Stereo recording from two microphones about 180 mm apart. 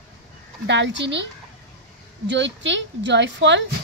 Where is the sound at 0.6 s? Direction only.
85° right.